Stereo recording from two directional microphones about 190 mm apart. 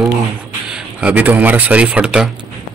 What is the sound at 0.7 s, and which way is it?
Speech, 5° right (ahead or behind).